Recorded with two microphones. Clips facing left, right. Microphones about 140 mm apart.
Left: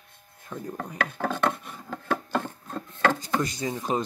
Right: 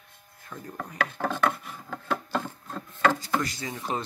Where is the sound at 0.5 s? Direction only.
15° left (ahead or behind).